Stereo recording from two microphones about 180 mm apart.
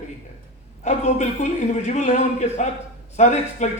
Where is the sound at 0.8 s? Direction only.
40° left (ahead or behind).